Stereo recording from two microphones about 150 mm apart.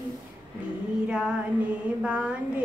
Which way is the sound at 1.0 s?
5° right (ahead or behind).